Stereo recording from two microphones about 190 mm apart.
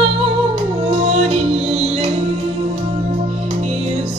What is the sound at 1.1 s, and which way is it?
Music, 35° right (ahead or behind).